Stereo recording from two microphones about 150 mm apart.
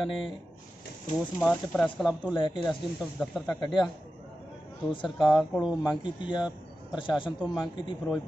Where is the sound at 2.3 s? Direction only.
30° left (ahead or behind).